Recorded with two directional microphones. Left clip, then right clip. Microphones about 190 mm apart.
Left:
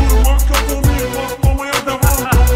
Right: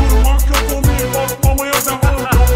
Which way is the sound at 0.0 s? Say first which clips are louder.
Even; centre (ahead or behind).